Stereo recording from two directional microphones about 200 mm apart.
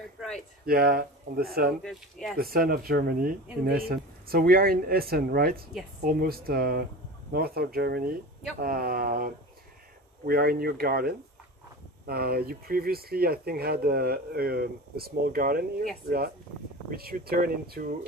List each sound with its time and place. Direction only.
0.7 s speech: 50° right (ahead or behind)
1.8 s speech: centre (ahead or behind)
2.3 s speech: 50° right (ahead or behind)
16.9 s speech: 50° right (ahead or behind)